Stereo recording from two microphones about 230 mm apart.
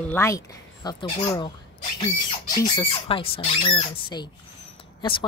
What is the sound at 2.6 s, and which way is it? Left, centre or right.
Speech, left.